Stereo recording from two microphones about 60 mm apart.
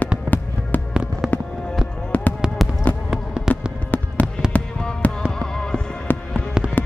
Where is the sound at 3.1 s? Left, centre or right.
Centre.